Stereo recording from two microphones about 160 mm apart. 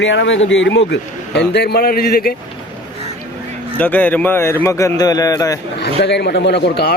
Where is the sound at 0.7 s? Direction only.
90° left; by 2.3 s 70° left (ahead or behind).